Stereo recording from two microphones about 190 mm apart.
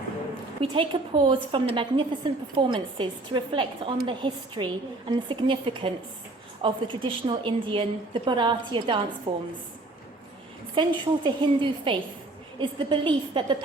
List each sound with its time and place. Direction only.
0.6 s a woman's voice: 25° right (ahead or behind)
10.8 s a woman's voice: 25° right (ahead or behind)